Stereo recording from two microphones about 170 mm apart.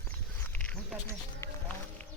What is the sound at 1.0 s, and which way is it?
Run, 15° left (ahead or behind).